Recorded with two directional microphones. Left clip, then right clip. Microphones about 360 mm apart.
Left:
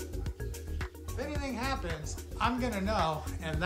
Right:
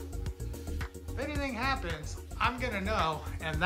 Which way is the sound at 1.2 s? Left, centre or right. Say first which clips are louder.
Right 2 dB; centre.